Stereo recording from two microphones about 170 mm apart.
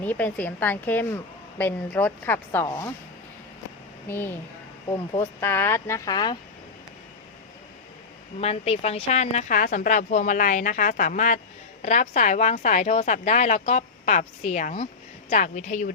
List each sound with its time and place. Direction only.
0.0 s a woman's voice: 10° left (ahead or behind)
4.1 s a woman's voice: 10° left (ahead or behind)
5.4 s a woman's voice: 15° left (ahead or behind)
8.4 s speech: 35° left (ahead or behind)